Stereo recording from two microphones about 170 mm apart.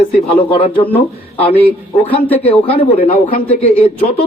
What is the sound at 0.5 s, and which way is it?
Speech, 30° left (ahead or behind).